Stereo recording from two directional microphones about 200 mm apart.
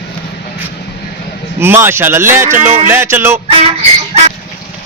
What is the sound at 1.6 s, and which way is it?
Speech, 10° right (ahead or behind).